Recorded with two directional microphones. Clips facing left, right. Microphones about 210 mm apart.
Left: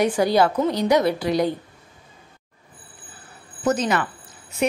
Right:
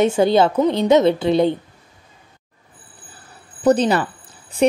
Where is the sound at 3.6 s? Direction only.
30° right (ahead or behind).